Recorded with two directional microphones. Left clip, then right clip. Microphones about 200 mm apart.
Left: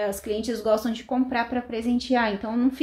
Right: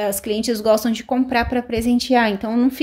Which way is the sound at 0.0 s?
45° right (ahead or behind).